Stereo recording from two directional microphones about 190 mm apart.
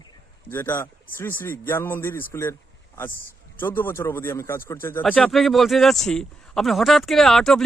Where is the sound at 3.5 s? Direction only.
10° left (ahead or behind).